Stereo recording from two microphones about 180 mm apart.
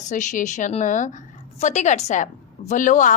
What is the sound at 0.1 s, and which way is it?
Speech, 45° left (ahead or behind).